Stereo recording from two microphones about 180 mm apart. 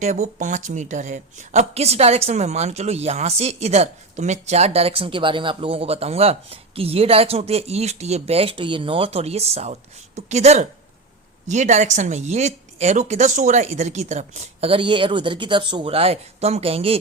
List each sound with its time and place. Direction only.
0.0 s a woman's voice: 40° right (ahead or behind)